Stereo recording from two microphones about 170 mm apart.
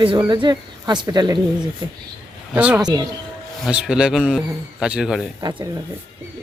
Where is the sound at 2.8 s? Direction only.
25° right (ahead or behind).